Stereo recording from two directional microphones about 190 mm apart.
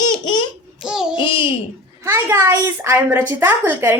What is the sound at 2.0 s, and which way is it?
A woman's voice, 15° right (ahead or behind).